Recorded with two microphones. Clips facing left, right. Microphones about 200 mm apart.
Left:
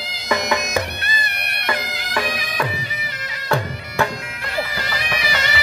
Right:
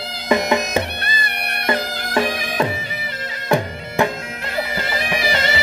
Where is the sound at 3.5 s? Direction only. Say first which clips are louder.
Right 3 dB; 15° right (ahead or behind).